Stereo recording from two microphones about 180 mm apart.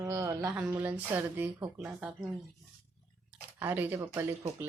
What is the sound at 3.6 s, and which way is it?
A woman's voice, 10° right (ahead or behind).